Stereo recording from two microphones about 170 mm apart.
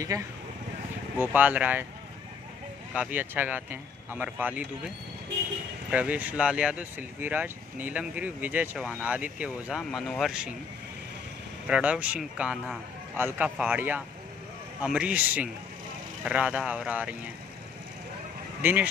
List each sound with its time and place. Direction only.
0.1 s speech: 20° right (ahead or behind)
2.9 s speech: 10° right (ahead or behind)
5.9 s speech: 10° right (ahead or behind)
11.6 s speech: 5° right (ahead or behind)
18.6 s speech: 10° right (ahead or behind)